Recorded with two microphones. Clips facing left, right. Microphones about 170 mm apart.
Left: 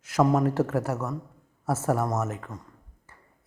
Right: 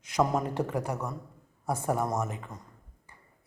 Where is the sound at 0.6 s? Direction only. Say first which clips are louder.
Left 5 dB; 5° left (ahead or behind).